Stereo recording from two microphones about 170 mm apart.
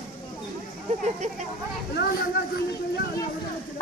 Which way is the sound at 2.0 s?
65° left (ahead or behind).